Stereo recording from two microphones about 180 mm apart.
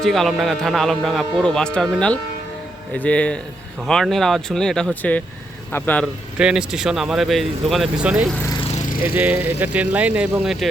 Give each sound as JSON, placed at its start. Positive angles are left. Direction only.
{"t": 0.0, "sound": "speech", "side_deg": 0}
{"t": 6.4, "sound": "speech", "side_deg": -5}
{"t": 8.7, "sound": "lawn mower", "side_deg": 50}
{"t": 9.0, "sound": "speech", "side_deg": -10}